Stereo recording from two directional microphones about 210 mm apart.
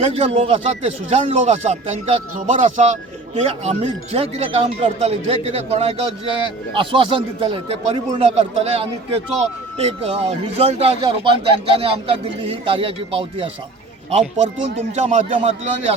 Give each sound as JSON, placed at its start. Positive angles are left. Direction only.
{"t": 0.0, "sound": "speech", "side_deg": -30}